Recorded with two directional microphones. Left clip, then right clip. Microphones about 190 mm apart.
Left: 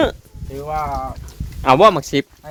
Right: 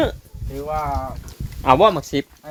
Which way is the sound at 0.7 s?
60° left (ahead or behind).